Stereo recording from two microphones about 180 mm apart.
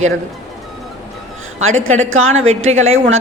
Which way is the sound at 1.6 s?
90° right.